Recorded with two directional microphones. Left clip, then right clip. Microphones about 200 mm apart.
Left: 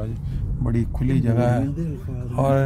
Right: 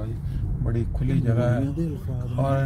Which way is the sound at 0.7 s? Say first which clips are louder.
Left 4 dB; 25° left (ahead or behind).